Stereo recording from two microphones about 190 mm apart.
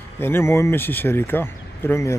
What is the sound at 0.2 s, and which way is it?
Speech, 10° left (ahead or behind).